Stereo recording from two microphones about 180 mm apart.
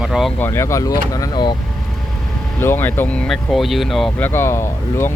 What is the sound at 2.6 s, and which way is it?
Speech, 10° left (ahead or behind).